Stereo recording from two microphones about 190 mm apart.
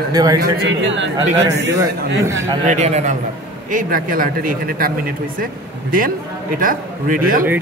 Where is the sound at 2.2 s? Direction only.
15° right (ahead or behind).